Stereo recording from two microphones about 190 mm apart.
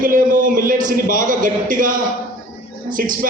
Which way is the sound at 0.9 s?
45° right (ahead or behind).